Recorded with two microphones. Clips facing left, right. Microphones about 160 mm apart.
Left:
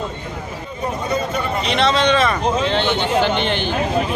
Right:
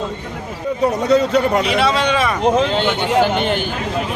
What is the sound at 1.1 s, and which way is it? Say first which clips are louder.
Speech: right 8 dB; 80° right.